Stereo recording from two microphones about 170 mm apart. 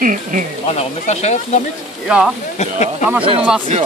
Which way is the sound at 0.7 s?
40° left (ahead or behind).